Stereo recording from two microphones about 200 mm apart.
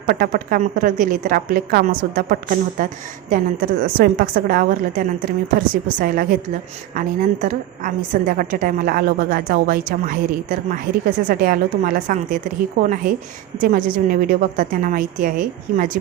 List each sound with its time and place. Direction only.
0.1 s a woman's voice: 45° right (ahead or behind)